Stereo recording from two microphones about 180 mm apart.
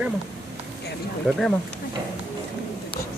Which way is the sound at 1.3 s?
Centre (ahead or behind).